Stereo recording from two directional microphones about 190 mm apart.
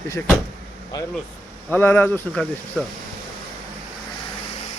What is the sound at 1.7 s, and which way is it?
Speech, 10° left (ahead or behind).